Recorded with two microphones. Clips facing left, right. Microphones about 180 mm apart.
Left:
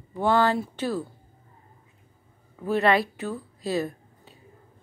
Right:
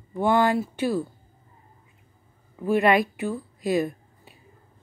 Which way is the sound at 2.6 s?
15° right (ahead or behind).